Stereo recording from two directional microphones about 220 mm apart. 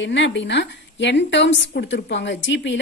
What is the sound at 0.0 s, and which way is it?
A woman's voice, 55° left (ahead or behind).